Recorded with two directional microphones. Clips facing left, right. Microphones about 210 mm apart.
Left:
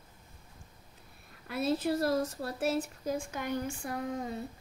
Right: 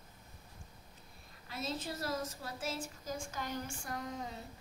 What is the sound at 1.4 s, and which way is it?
Speech, 60° left (ahead or behind).